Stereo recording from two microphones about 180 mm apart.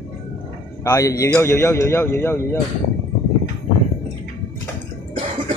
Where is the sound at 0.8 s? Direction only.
15° left (ahead or behind).